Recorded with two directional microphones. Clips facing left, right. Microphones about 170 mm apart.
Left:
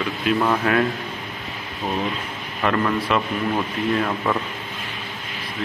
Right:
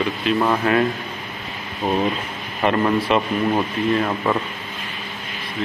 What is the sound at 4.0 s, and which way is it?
Speech, 10° right (ahead or behind).